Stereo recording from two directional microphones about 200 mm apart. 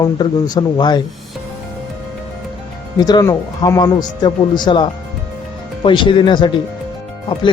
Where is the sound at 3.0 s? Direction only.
20° left (ahead or behind).